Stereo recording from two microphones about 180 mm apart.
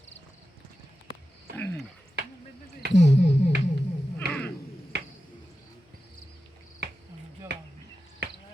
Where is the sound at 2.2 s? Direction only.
65° right (ahead or behind).